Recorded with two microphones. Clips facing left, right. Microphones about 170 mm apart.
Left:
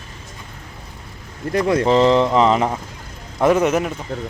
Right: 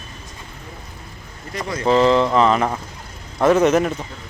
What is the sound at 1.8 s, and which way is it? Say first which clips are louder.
Speech: right 2 dB; 15° left (ahead or behind).